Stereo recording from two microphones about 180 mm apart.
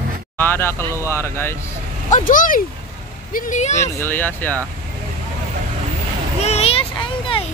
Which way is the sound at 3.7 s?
15° left (ahead or behind).